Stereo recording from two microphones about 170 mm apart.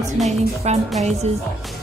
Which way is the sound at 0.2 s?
Centre (ahead or behind).